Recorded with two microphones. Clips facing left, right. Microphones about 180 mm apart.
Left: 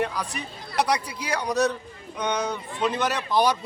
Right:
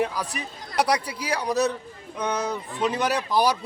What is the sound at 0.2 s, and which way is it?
A man's voice, 10° right (ahead or behind).